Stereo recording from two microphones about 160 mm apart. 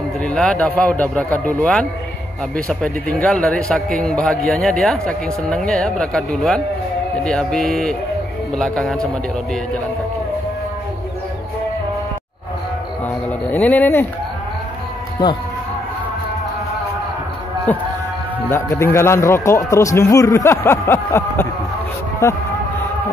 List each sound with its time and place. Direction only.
0.2 s speech: 5° left (ahead or behind)
13.5 s speech: 10° left (ahead or behind)
15.2 s speech: 25° left (ahead or behind)
17.7 s speech: 10° left (ahead or behind)